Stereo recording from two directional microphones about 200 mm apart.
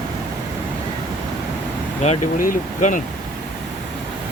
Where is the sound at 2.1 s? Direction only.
40° left (ahead or behind).